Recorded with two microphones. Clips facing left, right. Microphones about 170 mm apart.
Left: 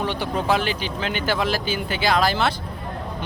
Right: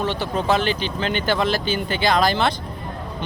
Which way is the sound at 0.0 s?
10° left (ahead or behind).